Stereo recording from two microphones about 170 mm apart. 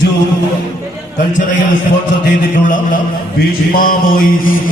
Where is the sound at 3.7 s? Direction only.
55° left (ahead or behind).